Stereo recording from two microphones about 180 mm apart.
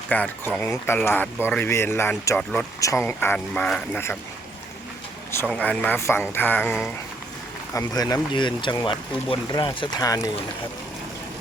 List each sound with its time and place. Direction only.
0.1 s speech: 10° left (ahead or behind)
5.5 s speech: 10° left (ahead or behind)